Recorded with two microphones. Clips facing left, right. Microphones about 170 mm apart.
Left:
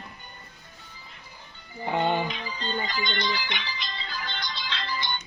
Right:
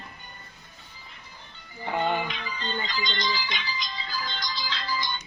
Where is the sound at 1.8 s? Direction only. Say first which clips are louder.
Left 2 dB; 20° left (ahead or behind).